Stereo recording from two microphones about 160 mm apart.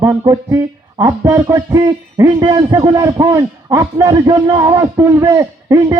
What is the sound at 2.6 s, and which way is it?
A man's voice, 20° right (ahead or behind).